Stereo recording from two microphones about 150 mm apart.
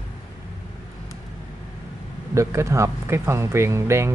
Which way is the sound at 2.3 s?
20° right (ahead or behind).